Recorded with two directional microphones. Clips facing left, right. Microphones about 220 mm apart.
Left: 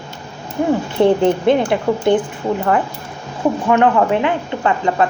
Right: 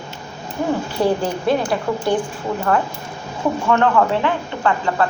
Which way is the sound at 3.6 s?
20° left (ahead or behind).